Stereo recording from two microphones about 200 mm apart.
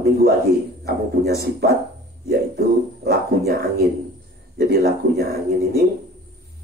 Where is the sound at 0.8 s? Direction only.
50° right (ahead or behind).